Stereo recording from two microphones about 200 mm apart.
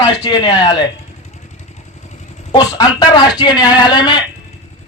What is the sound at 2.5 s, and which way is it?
A man's voice, 20° left (ahead or behind).